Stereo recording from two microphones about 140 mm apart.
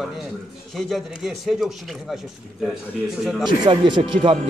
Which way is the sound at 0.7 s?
Centre (ahead or behind).